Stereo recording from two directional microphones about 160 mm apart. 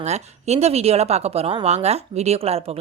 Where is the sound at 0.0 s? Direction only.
45° right (ahead or behind).